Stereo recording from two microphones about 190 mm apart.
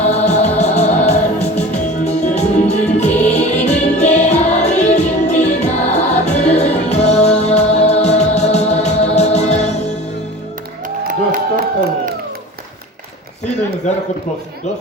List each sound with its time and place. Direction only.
0.0 s music: 35° left (ahead or behind)
11.1 s crowd: 45° right (ahead or behind)